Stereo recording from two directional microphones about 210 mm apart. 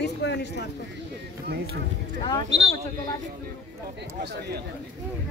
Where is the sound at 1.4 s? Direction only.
50° right (ahead or behind).